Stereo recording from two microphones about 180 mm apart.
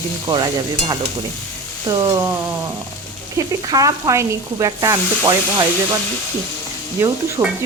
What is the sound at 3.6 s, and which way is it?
Sizzle, 20° right (ahead or behind).